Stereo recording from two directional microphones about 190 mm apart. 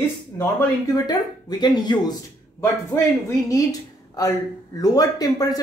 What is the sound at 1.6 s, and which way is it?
Speech, 20° left (ahead or behind).